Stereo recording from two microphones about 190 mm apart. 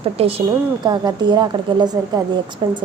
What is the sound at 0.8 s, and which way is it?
A woman's voice, 20° right (ahead or behind).